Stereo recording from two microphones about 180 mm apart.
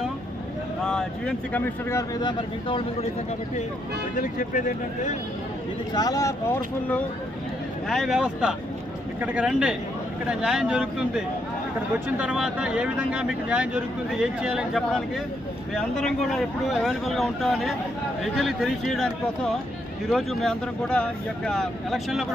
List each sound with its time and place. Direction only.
0.8 s speech: 5° left (ahead or behind)
4.2 s speech: 50° left (ahead or behind)
5.9 s speech: 20° left (ahead or behind)
7.9 s a man's voice: centre (ahead or behind)